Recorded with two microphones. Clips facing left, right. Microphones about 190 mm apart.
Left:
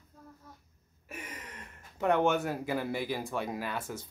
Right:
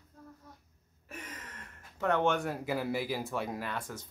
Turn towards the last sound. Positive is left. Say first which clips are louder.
# left 2 dB
turn(degrees=10)  # may be behind; listen again after turning